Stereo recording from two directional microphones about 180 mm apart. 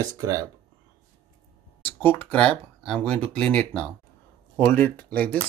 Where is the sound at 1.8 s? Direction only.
10° left (ahead or behind).